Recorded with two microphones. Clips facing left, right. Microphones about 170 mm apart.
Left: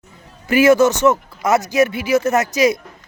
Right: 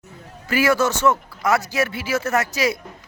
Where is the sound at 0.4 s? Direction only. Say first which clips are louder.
Left 7 dB; 20° left (ahead or behind).